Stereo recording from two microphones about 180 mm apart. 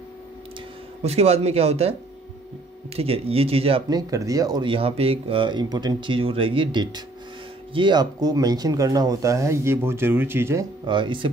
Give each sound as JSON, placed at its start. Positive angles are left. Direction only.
{"t": 1.0, "sound": "speech", "side_deg": -35}
{"t": 3.0, "sound": "speech", "side_deg": -35}
{"t": 3.9, "sound": "speech", "side_deg": -20}